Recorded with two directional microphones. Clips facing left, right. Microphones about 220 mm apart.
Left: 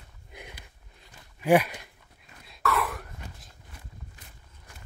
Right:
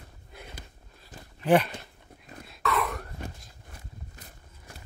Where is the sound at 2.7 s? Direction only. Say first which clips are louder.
Right 1 dB; centre (ahead or behind).